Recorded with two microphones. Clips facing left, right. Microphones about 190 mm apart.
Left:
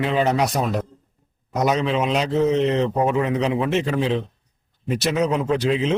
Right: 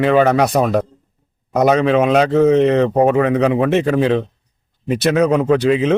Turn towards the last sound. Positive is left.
turn(degrees=-60)  # may be behind; listen again after turning